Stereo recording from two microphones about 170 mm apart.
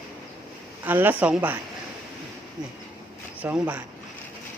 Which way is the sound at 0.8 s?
10° right (ahead or behind).